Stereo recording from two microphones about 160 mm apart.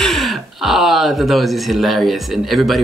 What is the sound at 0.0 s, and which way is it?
Speech, centre (ahead or behind).